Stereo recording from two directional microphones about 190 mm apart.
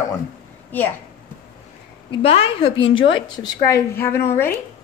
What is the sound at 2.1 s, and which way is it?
Speech, 30° left (ahead or behind).